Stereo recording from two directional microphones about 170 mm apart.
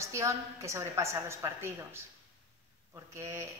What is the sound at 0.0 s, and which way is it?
A woman's voice, 15° right (ahead or behind).